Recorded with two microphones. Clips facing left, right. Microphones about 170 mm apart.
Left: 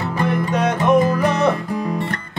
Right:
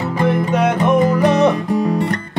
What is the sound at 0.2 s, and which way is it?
Music, 15° right (ahead or behind).